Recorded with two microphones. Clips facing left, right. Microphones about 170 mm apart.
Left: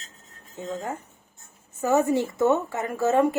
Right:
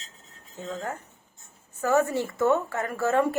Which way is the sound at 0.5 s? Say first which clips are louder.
Left 2 dB; 15° left (ahead or behind).